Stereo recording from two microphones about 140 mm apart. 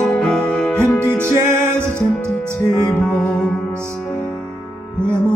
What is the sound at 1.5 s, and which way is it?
Music, 15° right (ahead or behind).